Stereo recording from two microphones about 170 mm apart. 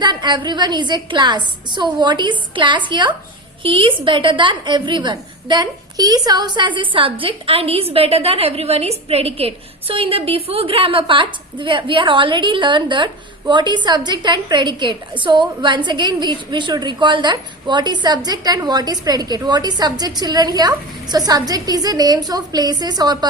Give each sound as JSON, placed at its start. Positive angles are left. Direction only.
{"t": 0.0, "sound": "a woman's voice", "side_deg": -25}